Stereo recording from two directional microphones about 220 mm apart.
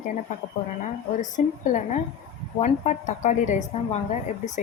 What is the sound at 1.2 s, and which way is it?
A woman's voice, 35° left (ahead or behind).